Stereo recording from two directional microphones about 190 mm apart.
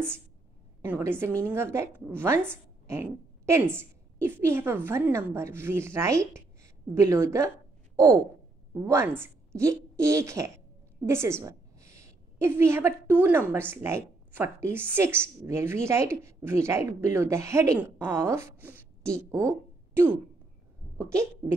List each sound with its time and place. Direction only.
0.8 s a woman's voice: 10° right (ahead or behind)
11.1 s a sound: 15° right (ahead or behind)
13.1 s speech: 10° right (ahead or behind)